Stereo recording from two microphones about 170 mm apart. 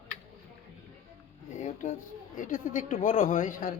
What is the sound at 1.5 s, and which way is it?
Speech, 45° left (ahead or behind).